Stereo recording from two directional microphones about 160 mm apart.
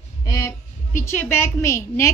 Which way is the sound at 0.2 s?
20° left (ahead or behind).